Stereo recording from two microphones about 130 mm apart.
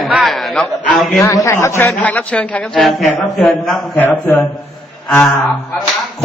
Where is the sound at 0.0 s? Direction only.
Centre (ahead or behind).